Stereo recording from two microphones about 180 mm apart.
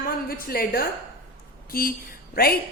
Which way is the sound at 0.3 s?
55° left (ahead or behind).